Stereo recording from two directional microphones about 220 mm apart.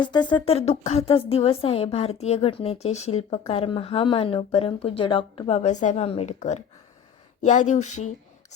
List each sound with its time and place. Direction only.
0.0 s speech: 20° left (ahead or behind)
7.7 s speech: 35° left (ahead or behind)